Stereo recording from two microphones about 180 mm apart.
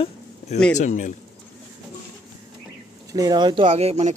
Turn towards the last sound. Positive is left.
turn(degrees=-35)  # may be behind; listen again after turning